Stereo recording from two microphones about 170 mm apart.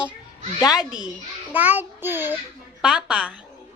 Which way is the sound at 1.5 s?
10° right (ahead or behind).